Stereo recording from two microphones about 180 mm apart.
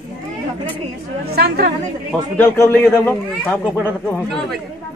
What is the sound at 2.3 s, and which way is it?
A man's voice, 15° left (ahead or behind).